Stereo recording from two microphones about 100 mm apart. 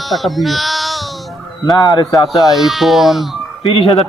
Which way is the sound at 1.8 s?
45° left (ahead or behind).